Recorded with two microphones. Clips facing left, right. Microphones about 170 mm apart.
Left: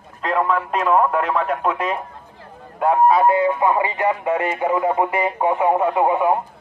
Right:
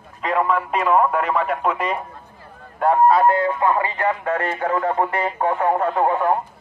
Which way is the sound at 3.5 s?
15° left (ahead or behind).